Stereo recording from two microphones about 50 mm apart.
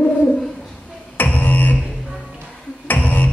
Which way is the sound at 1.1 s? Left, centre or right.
Left.